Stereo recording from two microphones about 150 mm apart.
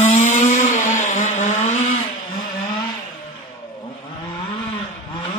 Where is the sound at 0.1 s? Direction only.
55° left (ahead or behind).